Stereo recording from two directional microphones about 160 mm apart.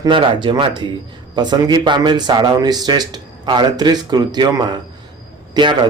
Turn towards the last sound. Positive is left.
turn(degrees=-30)  # may be behind; listen again after turning